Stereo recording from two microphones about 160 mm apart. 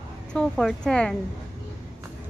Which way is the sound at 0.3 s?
5° left (ahead or behind).